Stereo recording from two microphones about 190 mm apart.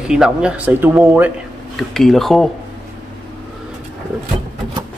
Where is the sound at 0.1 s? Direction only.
5° right (ahead or behind).